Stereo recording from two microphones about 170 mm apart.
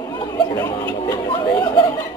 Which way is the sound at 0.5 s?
15° left (ahead or behind).